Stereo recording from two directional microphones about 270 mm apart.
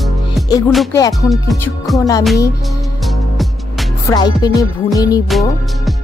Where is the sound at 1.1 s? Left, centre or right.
Centre.